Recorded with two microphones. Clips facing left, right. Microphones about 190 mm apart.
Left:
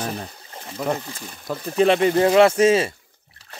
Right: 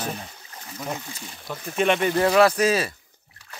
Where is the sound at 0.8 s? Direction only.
60° left (ahead or behind).